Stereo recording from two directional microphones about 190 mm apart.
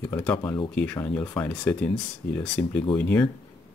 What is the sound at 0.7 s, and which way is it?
Speech, 10° left (ahead or behind).